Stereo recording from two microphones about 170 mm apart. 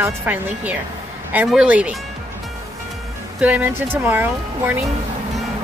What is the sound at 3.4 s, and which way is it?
Speech, 10° right (ahead or behind).